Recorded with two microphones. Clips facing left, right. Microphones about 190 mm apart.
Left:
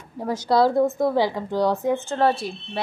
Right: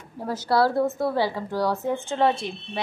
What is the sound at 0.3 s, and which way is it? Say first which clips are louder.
Speech: left 3 dB; 15° left (ahead or behind).